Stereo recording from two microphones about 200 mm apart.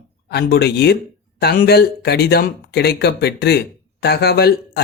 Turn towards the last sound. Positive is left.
turn(degrees=50)  # may be behind; listen again after turning